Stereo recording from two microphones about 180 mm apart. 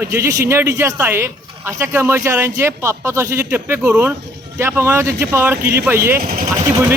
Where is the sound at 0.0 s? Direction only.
15° right (ahead or behind).